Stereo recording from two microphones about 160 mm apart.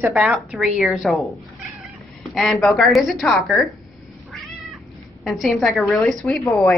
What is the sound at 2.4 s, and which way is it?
A woman's voice, 5° left (ahead or behind).